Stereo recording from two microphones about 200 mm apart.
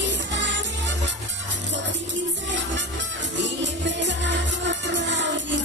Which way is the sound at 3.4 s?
65° right (ahead or behind).